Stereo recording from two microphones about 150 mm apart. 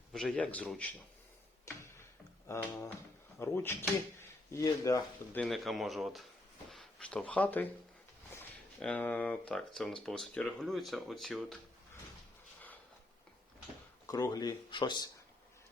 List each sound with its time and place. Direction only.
0.1 s a man's voice: centre (ahead or behind)
1.6 s a sound: 15° left (ahead or behind)
2.5 s speech: 20° left (ahead or behind)
5.3 s speech: 5° left (ahead or behind)
8.8 s a man's voice: 10° left (ahead or behind)
14.1 s speech: 25° left (ahead or behind)